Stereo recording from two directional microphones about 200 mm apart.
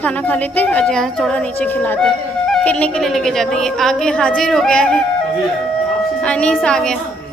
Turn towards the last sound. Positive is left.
turn(degrees=5)  # may be behind; listen again after turning